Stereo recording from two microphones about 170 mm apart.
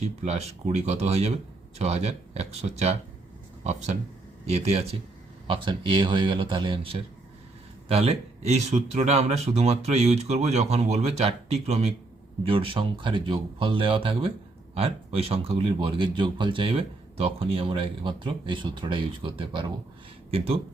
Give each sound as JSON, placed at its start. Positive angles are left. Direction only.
{"t": 0.3, "sound": "speech", "side_deg": -40}